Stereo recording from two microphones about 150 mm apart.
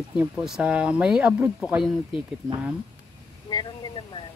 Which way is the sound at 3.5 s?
30° left (ahead or behind).